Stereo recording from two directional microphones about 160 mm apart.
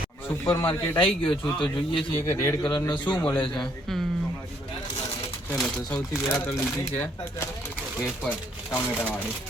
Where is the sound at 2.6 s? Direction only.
30° left (ahead or behind).